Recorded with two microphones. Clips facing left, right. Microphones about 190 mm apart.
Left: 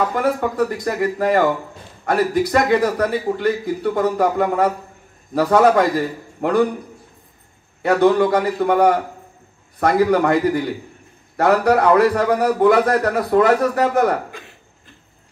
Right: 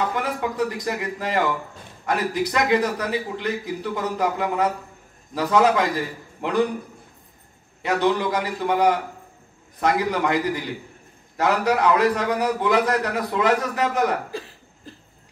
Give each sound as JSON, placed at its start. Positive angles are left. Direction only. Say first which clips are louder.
{"t": 0.1, "sound": "a man's voice", "louder": "left 6 dB", "side_deg": 50}
{"t": 7.8, "sound": "a man's voice", "louder": "left 7 dB", "side_deg": 50}
{"t": 14.3, "sound": "cough", "louder": "right 5 dB", "side_deg": -35}